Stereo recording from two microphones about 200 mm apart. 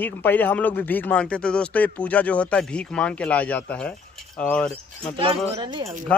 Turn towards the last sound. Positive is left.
turn(degrees=-25)  # may be behind; listen again after turning